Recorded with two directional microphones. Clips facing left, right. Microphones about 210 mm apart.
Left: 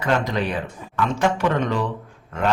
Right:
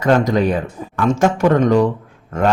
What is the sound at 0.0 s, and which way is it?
Speech, 45° right (ahead or behind).